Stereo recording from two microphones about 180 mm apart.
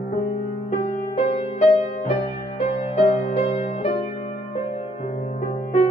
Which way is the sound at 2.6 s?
35° left (ahead or behind).